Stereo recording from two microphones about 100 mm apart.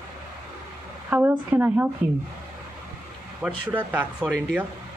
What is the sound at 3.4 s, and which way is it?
Speech, 15° right (ahead or behind).